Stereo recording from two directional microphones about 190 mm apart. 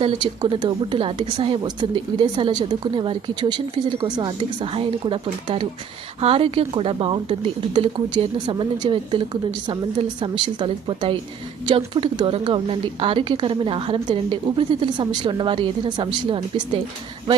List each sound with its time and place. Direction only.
0.0 s speech: 25° right (ahead or behind)